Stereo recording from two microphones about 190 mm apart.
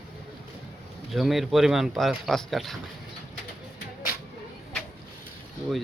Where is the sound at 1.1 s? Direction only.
Centre (ahead or behind).